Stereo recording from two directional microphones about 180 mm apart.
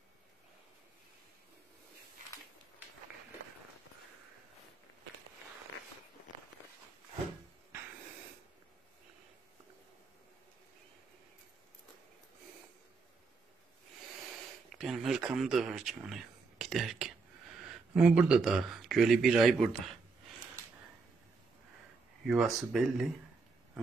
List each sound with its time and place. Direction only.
14.7 s speech: centre (ahead or behind)
22.2 s speech: centre (ahead or behind)